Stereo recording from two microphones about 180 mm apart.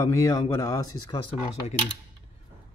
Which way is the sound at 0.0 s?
20° left (ahead or behind).